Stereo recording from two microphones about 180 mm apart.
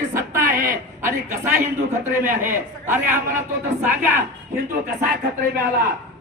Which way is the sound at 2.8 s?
10° right (ahead or behind).